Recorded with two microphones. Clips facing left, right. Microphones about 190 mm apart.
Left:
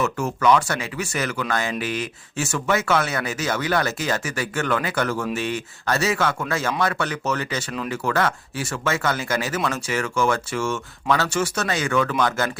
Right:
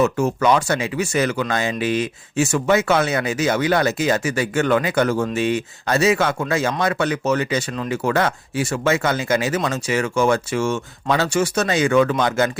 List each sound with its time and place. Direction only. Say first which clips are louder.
0.0 s speech: right 4 dB; 25° right (ahead or behind)